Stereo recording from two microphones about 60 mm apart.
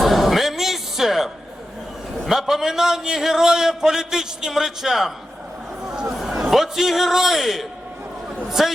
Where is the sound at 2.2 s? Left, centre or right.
Centre.